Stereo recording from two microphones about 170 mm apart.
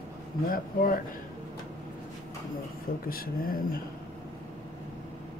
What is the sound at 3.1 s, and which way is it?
Speech, 60° left (ahead or behind).